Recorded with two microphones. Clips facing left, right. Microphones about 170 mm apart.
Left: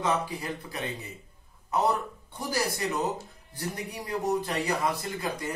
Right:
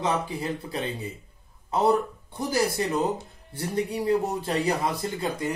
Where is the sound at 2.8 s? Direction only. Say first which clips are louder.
Right 4 dB; 25° right (ahead or behind).